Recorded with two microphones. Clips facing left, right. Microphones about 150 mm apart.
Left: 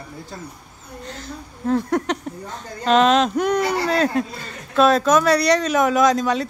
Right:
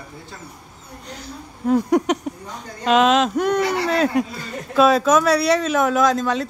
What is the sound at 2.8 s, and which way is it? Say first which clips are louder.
Speech: even; 5° right (ahead or behind).